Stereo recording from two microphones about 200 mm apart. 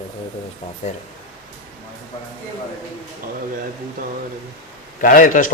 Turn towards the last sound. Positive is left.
turn(degrees=40)  # may be behind; listen again after turning